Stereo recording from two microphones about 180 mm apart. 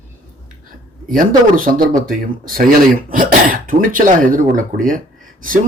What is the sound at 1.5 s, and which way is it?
A man's voice, 50° right (ahead or behind).